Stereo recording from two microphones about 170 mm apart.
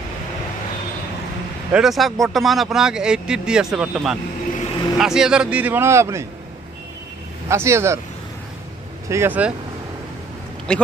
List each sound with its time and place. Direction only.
1.7 s speech: centre (ahead or behind)
7.4 s speech: 15° right (ahead or behind)
9.1 s speech: 10° right (ahead or behind)
10.7 s speech: 5° left (ahead or behind)